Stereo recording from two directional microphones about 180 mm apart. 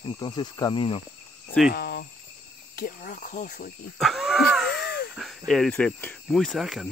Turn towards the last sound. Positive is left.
turn(degrees=0)  # may be behind; listen again after turning